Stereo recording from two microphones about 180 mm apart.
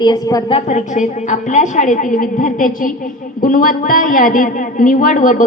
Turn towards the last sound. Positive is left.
turn(degrees=45)  # may be behind; listen again after turning